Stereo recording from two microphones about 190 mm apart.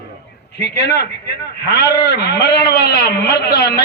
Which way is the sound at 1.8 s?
60° left (ahead or behind).